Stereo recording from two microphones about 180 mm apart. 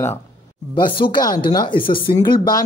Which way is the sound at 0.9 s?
25° left (ahead or behind).